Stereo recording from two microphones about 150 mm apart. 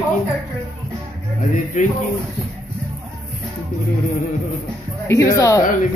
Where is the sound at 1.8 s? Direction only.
60° left (ahead or behind).